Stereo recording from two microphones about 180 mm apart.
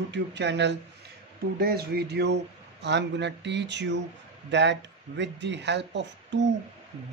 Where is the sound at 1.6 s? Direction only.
60° right (ahead or behind).